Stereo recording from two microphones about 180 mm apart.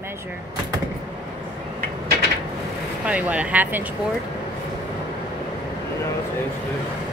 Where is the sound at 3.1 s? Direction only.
5° right (ahead or behind).